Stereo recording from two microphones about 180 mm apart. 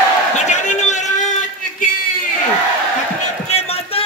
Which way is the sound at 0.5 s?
40° left (ahead or behind).